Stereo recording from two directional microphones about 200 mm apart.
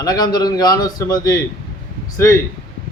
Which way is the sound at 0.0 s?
20° left (ahead or behind).